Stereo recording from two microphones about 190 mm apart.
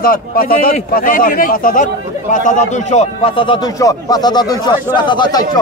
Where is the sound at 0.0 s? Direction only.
50° left (ahead or behind).